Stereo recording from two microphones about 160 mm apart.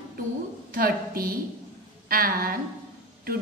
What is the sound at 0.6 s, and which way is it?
A woman's voice, 65° right (ahead or behind).